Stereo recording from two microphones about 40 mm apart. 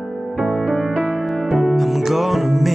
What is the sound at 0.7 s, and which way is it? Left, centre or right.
Music, left.